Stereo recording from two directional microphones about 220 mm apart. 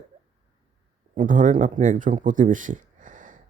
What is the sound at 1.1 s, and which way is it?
Speech, 35° right (ahead or behind).